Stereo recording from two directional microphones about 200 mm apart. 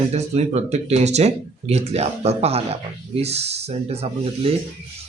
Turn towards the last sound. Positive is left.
turn(degrees=-30)  # may be behind; listen again after turning